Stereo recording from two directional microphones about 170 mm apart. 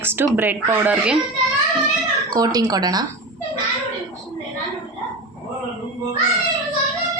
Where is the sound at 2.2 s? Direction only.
20° right (ahead or behind).